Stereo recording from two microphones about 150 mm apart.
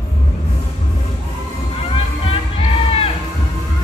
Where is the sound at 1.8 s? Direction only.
40° left (ahead or behind).